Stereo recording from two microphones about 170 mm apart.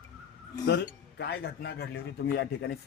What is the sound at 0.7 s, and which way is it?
Speech, 75° left (ahead or behind).